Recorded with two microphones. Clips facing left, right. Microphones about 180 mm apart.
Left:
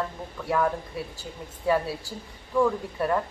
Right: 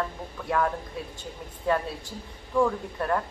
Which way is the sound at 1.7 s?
5° left (ahead or behind).